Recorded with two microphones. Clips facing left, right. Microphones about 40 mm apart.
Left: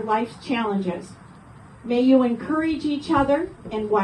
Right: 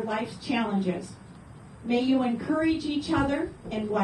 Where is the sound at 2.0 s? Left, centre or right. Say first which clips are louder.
Left 9 dB; left.